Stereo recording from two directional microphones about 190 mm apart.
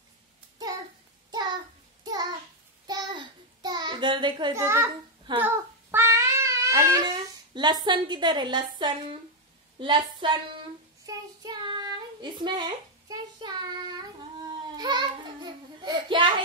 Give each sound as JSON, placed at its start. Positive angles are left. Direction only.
{"t": 1.3, "sound": "a sound", "side_deg": -20}
{"t": 2.9, "sound": "child singing", "side_deg": -25}
{"t": 7.5, "sound": "a woman's voice", "side_deg": -25}
{"t": 11.1, "sound": "child singing", "side_deg": -20}